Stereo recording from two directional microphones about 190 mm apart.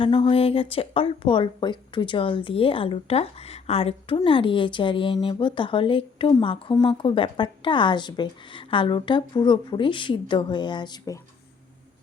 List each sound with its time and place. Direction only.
0.0 s speech: 25° left (ahead or behind)